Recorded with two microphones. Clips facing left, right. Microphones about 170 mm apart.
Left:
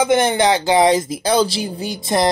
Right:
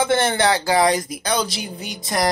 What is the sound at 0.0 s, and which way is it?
Speech, 15° left (ahead or behind).